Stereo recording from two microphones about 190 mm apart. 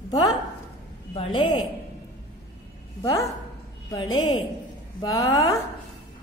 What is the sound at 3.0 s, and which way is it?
Speech, 15° left (ahead or behind).